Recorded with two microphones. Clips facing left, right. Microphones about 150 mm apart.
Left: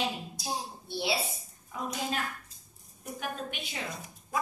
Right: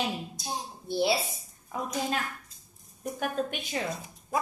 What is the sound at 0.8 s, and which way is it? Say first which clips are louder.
Speech: right 8 dB; 45° right (ahead or behind).